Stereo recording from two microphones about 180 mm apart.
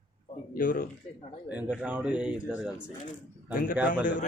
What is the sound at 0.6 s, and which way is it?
Speech, 50° left (ahead or behind).